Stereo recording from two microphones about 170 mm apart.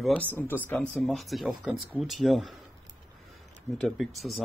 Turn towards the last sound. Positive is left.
turn(degrees=0)  # may be behind; listen again after turning